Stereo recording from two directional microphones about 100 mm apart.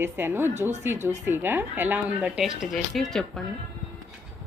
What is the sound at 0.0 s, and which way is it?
Speech, 25° right (ahead or behind).